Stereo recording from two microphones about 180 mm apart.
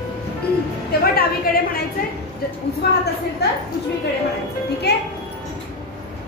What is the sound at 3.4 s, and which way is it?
Speech, 65° left (ahead or behind).